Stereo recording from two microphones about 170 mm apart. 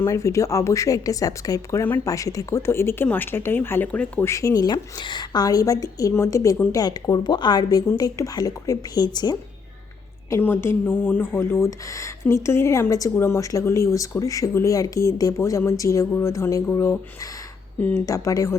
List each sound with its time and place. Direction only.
0.0 s a woman's voice: 15° left (ahead or behind)